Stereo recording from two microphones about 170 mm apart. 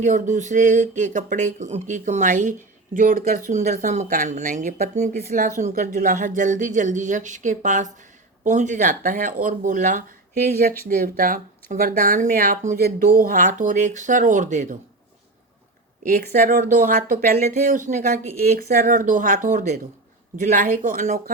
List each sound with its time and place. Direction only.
0.0 s speech: 45° right (ahead or behind)
16.3 s speech: 45° right (ahead or behind)
18.5 s speech: 60° right (ahead or behind)